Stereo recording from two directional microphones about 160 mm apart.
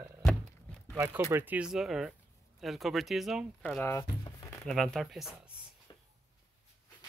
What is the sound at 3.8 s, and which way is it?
Speech, 20° left (ahead or behind).